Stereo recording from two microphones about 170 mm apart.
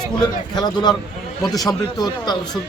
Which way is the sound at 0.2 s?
25° left (ahead or behind).